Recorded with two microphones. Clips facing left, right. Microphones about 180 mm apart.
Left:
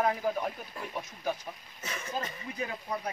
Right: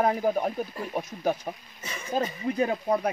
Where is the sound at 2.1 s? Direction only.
65° right (ahead or behind).